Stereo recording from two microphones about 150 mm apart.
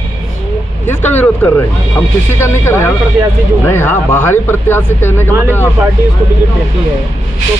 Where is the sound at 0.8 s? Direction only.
15° left (ahead or behind).